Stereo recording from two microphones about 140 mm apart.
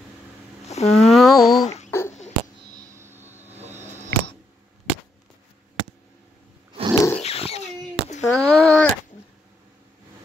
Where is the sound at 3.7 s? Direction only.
15° right (ahead or behind).